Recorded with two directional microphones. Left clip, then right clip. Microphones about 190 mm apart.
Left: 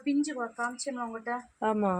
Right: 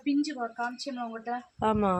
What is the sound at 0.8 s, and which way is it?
Speech, 5° right (ahead or behind).